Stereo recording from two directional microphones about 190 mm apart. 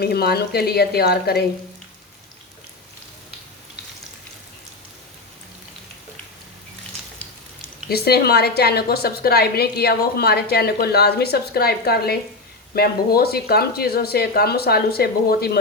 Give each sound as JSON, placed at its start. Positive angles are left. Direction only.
{"t": 0.0, "sound": "a woman's voice", "side_deg": 55}
{"t": 7.9, "sound": "a woman's voice", "side_deg": 55}